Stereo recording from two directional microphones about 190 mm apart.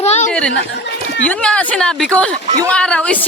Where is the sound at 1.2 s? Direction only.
5° left (ahead or behind).